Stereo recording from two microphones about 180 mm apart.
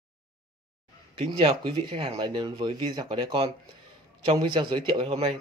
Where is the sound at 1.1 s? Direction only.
30° right (ahead or behind).